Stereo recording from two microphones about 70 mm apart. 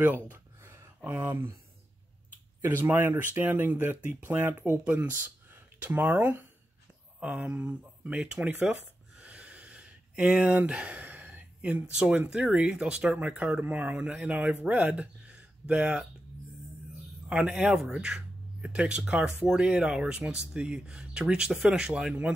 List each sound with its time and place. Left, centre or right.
0.0 s speech: right
0.6 s a sound: right
2.6 s speech: right
9.1 s a sound: centre
11.9 s speech: centre
17.3 s speech: centre
17.6 s speech: centre